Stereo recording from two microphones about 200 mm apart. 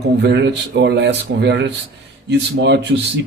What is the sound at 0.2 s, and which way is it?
Speech, 60° right (ahead or behind).